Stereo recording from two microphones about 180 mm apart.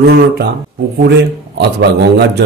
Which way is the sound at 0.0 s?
60° right (ahead or behind).